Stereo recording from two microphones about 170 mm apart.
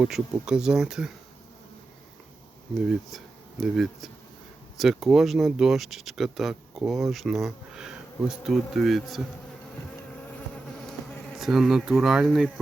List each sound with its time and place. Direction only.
0.0 s speech: 5° right (ahead or behind)
3.6 s speech: centre (ahead or behind)
11.3 s speech: centre (ahead or behind)